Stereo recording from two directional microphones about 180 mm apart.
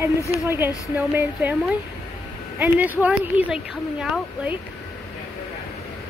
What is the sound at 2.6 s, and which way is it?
Speech, 10° right (ahead or behind).